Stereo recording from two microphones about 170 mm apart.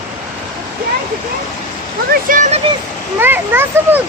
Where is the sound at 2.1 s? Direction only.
55° right (ahead or behind).